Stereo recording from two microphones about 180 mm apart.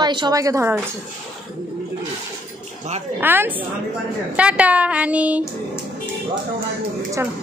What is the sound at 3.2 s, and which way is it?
Speech, 10° right (ahead or behind).